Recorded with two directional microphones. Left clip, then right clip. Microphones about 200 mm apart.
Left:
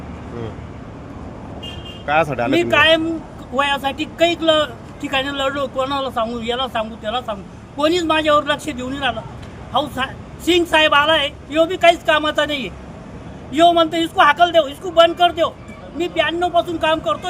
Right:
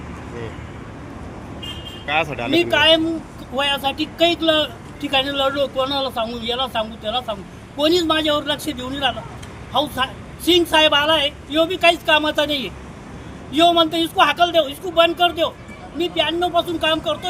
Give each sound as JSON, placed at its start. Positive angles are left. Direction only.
{"t": 2.0, "sound": "speech", "side_deg": 50}
{"t": 2.5, "sound": "speech", "side_deg": 5}
{"t": 10.5, "sound": "speech", "side_deg": 5}